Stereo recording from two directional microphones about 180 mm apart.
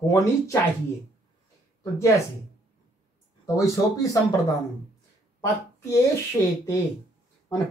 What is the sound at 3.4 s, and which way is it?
Speech, 20° left (ahead or behind).